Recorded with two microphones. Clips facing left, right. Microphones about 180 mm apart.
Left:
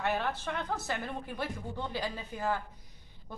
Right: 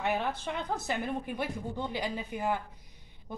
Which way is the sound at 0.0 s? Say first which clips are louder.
Right 1 dB; 15° right (ahead or behind).